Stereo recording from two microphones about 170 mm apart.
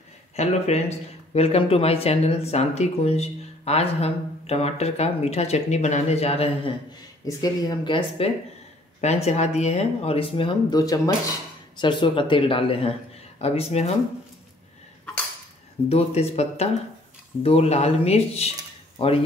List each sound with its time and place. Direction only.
0.4 s speech: 40° left (ahead or behind)
7.2 s speech: 20° left (ahead or behind)
9.0 s speech: 40° left (ahead or behind)
11.8 s speech: 30° left (ahead or behind)
15.9 s speech: 35° left (ahead or behind)